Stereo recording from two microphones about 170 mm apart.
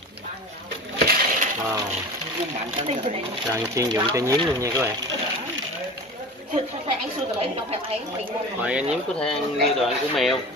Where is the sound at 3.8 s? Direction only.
20° right (ahead or behind).